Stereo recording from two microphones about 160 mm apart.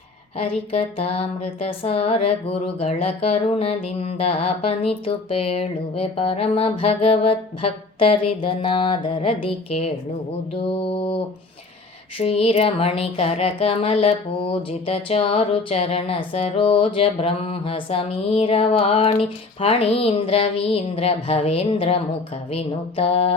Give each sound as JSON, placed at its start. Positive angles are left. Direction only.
{"t": 0.3, "sound": "speech", "side_deg": 35}
{"t": 12.2, "sound": "speech", "side_deg": 40}